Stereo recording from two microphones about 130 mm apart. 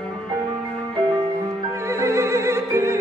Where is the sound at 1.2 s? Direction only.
25° right (ahead or behind).